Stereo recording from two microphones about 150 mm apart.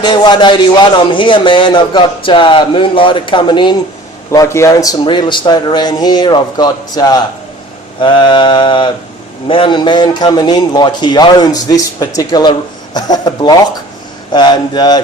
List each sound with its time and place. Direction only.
0.0 s a man's voice: 30° left (ahead or behind)
4.3 s a man's voice: 20° left (ahead or behind)